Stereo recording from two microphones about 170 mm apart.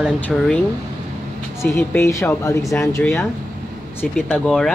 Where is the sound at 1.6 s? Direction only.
15° left (ahead or behind).